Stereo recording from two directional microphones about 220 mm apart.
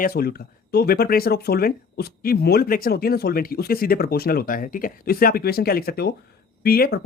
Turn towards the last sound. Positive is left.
turn(degrees=45)  # may be behind; listen again after turning